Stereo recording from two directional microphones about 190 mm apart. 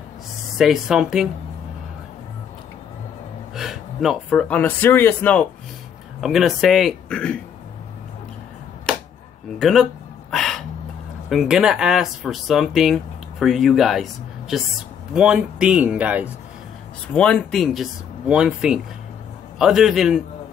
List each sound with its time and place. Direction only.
0.6 s speech: centre (ahead or behind)
3.5 s speech: centre (ahead or behind)
9.6 s speech: centre (ahead or behind)
10.3 s a sound: centre (ahead or behind)
11.2 s speech: centre (ahead or behind)
15.1 s speech: 5° right (ahead or behind)
17.1 s speech: 5° left (ahead or behind)